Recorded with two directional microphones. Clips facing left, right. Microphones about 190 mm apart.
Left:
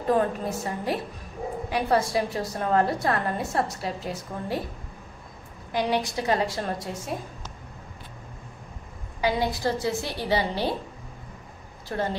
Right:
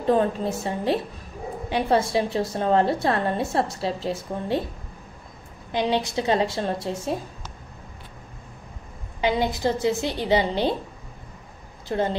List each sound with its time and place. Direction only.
0.0 s a woman's voice: 25° right (ahead or behind)
5.7 s a woman's voice: 25° right (ahead or behind)
9.2 s a woman's voice: 20° right (ahead or behind)
11.9 s a woman's voice: 20° right (ahead or behind)